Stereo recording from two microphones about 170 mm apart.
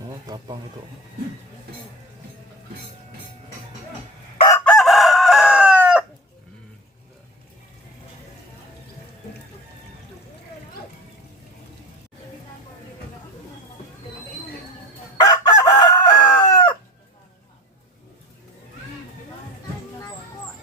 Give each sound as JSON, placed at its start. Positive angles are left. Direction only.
{"t": 0.3, "sound": "speech", "side_deg": -25}
{"t": 4.6, "sound": "chicken", "side_deg": 0}
{"t": 15.2, "sound": "chicken", "side_deg": 25}